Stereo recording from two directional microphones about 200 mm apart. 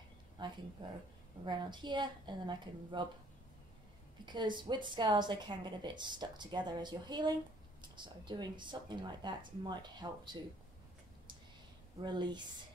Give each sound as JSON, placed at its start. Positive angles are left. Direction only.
{"t": 0.4, "sound": "a woman's voice", "side_deg": -20}
{"t": 4.3, "sound": "a woman's voice", "side_deg": -20}
{"t": 12.0, "sound": "a woman's voice", "side_deg": -20}